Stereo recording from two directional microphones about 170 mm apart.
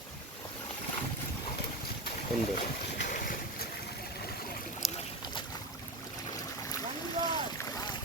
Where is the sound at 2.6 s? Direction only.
50° left (ahead or behind).